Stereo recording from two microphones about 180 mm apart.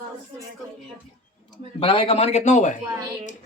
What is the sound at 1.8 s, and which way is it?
Speech, 30° left (ahead or behind).